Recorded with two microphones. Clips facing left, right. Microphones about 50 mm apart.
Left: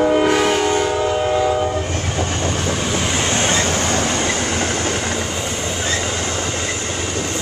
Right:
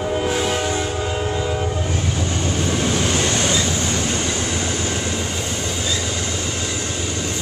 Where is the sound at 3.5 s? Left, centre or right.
Left.